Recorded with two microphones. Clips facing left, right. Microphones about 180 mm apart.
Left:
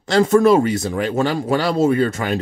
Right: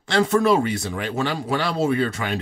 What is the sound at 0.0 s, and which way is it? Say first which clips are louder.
Speech: left 5 dB; 45° left (ahead or behind).